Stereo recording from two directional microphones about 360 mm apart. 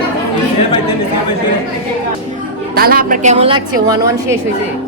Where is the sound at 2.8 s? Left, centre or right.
Right.